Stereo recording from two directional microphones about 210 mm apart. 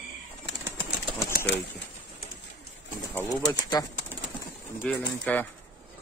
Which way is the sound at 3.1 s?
15° left (ahead or behind).